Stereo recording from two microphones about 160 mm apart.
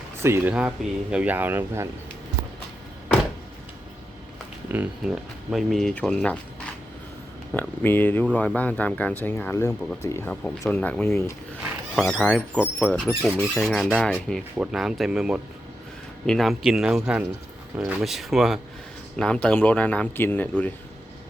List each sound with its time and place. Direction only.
0.2 s speech: 15° right (ahead or behind)
4.7 s speech: 10° right (ahead or behind)
7.5 s speech: 10° left (ahead or behind)
11.9 s speech: centre (ahead or behind)